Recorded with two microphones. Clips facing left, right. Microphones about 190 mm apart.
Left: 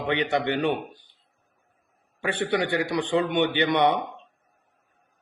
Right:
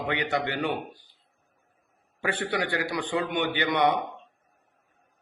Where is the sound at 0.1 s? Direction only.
20° left (ahead or behind).